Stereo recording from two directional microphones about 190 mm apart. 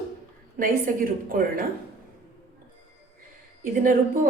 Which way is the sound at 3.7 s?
45° right (ahead or behind).